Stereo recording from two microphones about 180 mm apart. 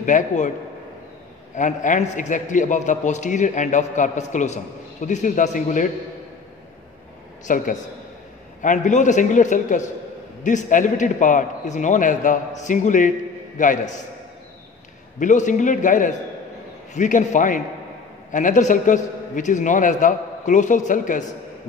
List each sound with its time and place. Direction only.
0.0 s a man's voice: 45° left (ahead or behind)
1.5 s a man's voice: 45° left (ahead or behind)
7.4 s a man's voice: 45° left (ahead or behind)
15.1 s a man's voice: 45° left (ahead or behind)